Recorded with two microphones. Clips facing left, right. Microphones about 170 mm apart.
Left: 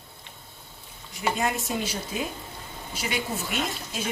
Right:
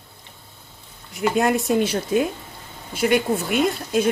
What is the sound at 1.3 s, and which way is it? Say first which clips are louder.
Speech: right 9 dB; 65° right (ahead or behind).